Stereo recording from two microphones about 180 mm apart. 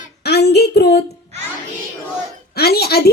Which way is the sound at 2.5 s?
60° left (ahead or behind).